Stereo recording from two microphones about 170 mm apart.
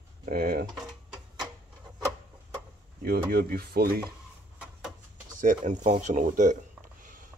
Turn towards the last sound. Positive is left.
turn(degrees=-50)  # may be behind; listen again after turning